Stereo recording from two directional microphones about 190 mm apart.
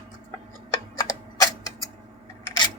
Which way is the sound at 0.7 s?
20° left (ahead or behind).